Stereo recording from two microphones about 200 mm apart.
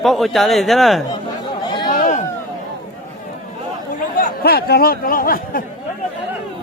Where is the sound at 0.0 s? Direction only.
Centre (ahead or behind).